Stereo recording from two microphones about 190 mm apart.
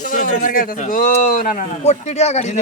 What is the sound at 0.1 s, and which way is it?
Speech, 45° left (ahead or behind).